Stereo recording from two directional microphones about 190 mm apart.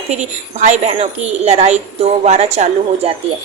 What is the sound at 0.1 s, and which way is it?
A woman's voice, 40° right (ahead or behind).